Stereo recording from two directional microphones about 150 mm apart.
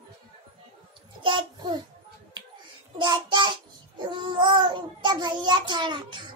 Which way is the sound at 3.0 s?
30° right (ahead or behind).